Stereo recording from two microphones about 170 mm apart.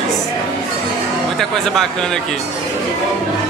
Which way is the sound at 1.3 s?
Centre (ahead or behind).